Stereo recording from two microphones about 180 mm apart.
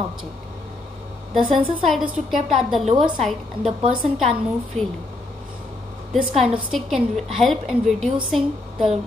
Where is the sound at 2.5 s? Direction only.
Centre (ahead or behind).